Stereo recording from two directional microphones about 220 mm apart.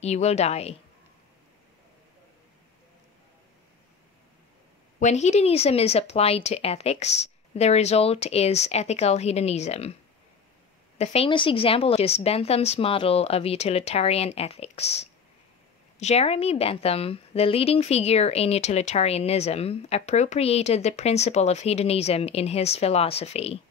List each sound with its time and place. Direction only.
0.0 s a woman's voice: 30° left (ahead or behind)
5.0 s a woman's voice: 30° left (ahead or behind)
11.0 s a woman's voice: 25° left (ahead or behind)